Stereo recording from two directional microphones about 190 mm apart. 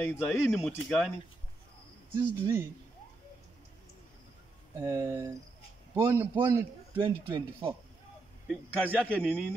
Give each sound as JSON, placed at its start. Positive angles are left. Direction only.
{"t": 0.0, "sound": "speech", "side_deg": 10}
{"t": 2.1, "sound": "a man's voice", "side_deg": -15}
{"t": 4.7, "sound": "a man's voice", "side_deg": -15}
{"t": 7.0, "sound": "speech", "side_deg": -25}
{"t": 8.5, "sound": "a man's voice", "side_deg": 10}